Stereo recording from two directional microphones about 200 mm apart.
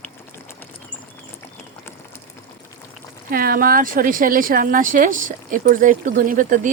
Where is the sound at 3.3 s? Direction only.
45° right (ahead or behind).